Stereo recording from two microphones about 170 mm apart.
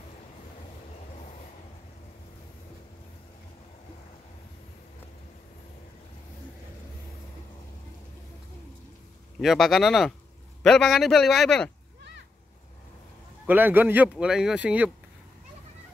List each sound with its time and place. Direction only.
9.4 s a man's voice: centre (ahead or behind)
12.0 s a sound: 90° right
13.5 s a man's voice: 10° right (ahead or behind)